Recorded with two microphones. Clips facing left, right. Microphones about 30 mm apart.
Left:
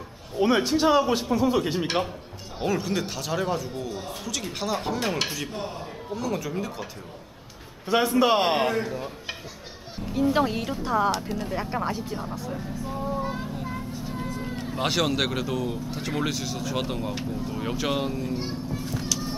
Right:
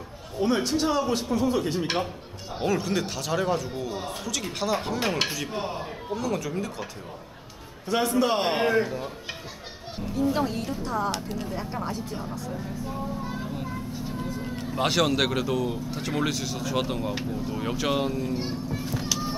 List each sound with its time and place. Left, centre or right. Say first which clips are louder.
0.4 s speech: left 3 dB; centre
5.5 s speech: right 2 dB; centre
6.1 s speech: even; centre
7.9 s speech: left 3 dB; centre
10.1 s speech: left 3 dB; left
11.1 s speech: left 3 dB; centre
11.5 s speech: left 5 dB; left; by 13.0 s centre
13.1 s vehicle: left 3 dB; centre
14.4 s a child's voice: right 2 dB; centre
19.0 s a sound: right 1 dB; centre